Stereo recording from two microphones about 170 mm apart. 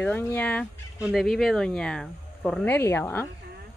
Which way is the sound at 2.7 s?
15° left (ahead or behind).